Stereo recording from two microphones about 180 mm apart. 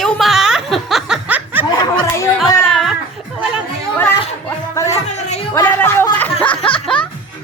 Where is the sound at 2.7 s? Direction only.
Centre (ahead or behind).